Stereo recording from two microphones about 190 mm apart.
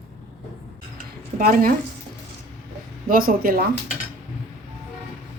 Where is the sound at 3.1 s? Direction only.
50° right (ahead or behind).